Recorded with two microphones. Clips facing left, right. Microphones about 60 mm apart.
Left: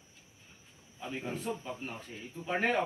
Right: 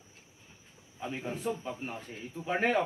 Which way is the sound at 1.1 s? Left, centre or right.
Centre.